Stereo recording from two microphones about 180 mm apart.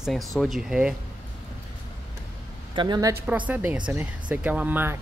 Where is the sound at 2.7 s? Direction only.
25° right (ahead or behind).